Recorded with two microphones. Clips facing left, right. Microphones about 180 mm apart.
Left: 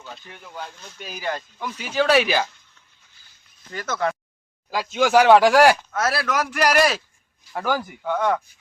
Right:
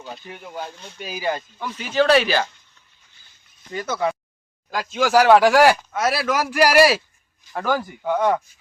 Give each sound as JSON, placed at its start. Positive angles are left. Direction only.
{"t": 0.0, "sound": "speech", "side_deg": -15}
{"t": 0.9, "sound": "speech", "side_deg": -5}
{"t": 3.7, "sound": "speech", "side_deg": -10}
{"t": 4.7, "sound": "speech", "side_deg": 0}
{"t": 7.5, "sound": "speech", "side_deg": 10}
{"t": 7.8, "sound": "speech", "side_deg": -10}